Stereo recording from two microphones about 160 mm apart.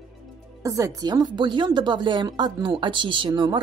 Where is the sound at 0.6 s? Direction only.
20° right (ahead or behind).